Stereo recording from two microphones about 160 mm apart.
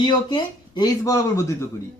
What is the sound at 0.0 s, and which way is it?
Speech, 25° left (ahead or behind).